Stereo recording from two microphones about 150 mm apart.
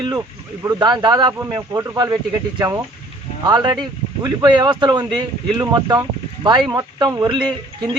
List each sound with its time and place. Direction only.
0.0 s speech: 25° right (ahead or behind)
3.4 s speech: 30° right (ahead or behind)